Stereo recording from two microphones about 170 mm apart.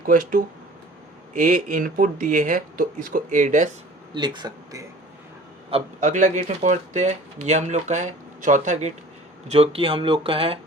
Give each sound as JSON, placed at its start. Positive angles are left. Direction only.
{"t": 0.0, "sound": "speech", "side_deg": -55}
{"t": 4.1, "sound": "speech", "side_deg": -25}
{"t": 6.0, "sound": "speech", "side_deg": -50}
{"t": 9.5, "sound": "speech", "side_deg": -35}